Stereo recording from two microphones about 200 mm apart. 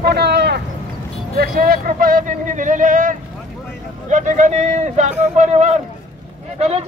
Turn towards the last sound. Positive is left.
turn(degrees=-30)  # may be behind; listen again after turning